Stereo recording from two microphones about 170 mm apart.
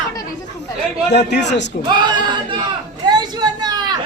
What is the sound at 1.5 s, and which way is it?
Speech, 90° left.